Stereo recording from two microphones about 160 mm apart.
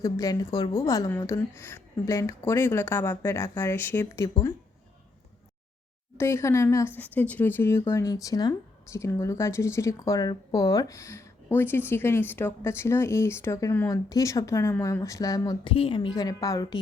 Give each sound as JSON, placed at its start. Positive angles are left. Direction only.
{"t": 0.0, "sound": "speech", "side_deg": 20}
{"t": 6.1, "sound": "speech", "side_deg": 15}
{"t": 15.7, "sound": "a woman's voice", "side_deg": 35}